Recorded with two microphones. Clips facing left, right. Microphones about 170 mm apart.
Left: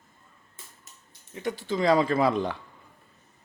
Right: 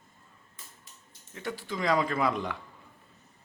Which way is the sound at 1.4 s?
20° left (ahead or behind).